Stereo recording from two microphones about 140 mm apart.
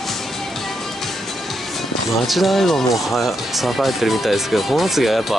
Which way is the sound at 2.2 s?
Centre (ahead or behind).